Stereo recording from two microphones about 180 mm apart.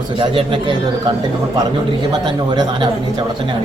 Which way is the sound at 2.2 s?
25° right (ahead or behind).